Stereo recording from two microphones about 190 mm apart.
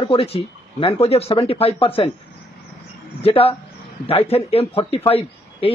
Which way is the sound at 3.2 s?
30° left (ahead or behind).